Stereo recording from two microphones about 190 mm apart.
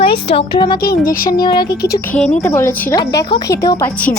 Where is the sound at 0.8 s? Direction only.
50° left (ahead or behind).